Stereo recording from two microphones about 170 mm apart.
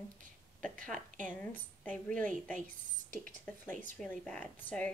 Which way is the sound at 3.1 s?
50° right (ahead or behind).